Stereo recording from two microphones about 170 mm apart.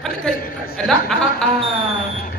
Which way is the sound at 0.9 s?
5° left (ahead or behind).